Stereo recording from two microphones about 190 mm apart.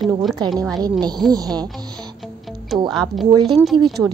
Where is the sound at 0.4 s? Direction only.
25° right (ahead or behind).